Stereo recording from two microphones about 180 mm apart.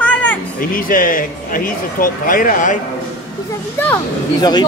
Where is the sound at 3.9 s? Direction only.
20° left (ahead or behind).